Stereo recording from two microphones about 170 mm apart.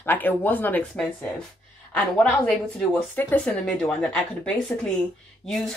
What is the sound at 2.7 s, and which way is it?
Speech, 10° left (ahead or behind).